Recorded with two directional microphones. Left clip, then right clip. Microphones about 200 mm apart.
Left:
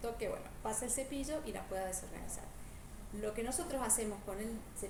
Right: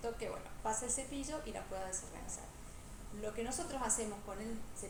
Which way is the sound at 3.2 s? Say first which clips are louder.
Left 2 dB; 60° left (ahead or behind).